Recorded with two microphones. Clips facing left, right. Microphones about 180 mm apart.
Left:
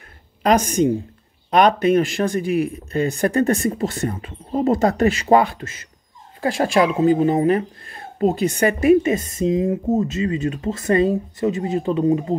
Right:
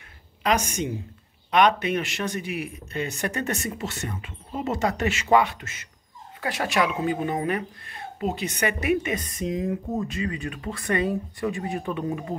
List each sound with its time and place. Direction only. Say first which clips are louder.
0.4 s speech: left 8 dB; 40° left (ahead or behind)